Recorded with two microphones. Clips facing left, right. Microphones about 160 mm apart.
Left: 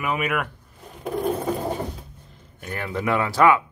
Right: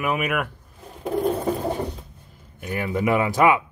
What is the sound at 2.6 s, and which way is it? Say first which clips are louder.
Speech: right 4 dB; 10° right (ahead or behind).